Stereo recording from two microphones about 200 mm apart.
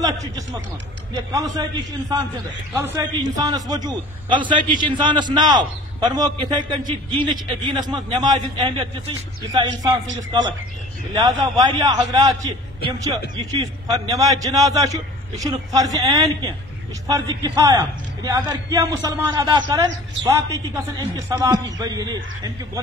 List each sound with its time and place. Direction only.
0.0 s a man's voice: 15° right (ahead or behind)